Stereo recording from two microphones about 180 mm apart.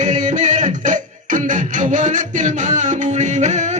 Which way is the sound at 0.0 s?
45° right (ahead or behind).